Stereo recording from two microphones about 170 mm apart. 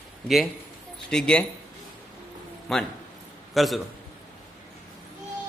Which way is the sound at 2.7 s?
Centre (ahead or behind).